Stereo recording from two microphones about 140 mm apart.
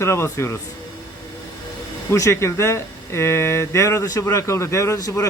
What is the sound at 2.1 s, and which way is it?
Speech, 20° left (ahead or behind).